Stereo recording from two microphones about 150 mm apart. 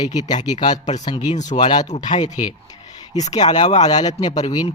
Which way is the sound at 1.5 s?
30° left (ahead or behind).